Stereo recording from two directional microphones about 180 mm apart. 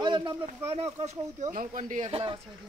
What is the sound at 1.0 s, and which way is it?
Speech, 45° right (ahead or behind).